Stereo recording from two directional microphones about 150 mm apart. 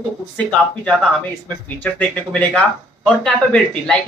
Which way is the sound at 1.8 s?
10° left (ahead or behind).